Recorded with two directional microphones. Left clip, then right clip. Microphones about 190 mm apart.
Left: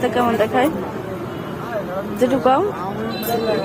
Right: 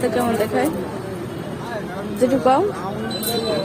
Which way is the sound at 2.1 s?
10° right (ahead or behind).